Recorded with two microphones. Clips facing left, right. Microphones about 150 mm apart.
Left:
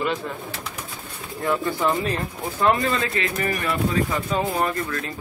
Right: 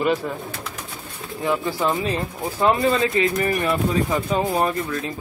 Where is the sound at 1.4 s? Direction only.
20° right (ahead or behind).